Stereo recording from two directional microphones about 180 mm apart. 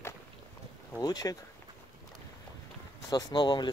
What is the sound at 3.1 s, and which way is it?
Speech, 25° left (ahead or behind).